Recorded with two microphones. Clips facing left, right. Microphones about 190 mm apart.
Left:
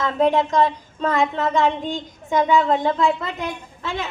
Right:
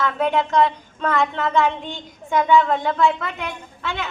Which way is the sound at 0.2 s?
35° left (ahead or behind).